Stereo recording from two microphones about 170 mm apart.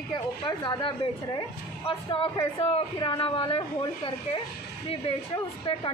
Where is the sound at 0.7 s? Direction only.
30° left (ahead or behind).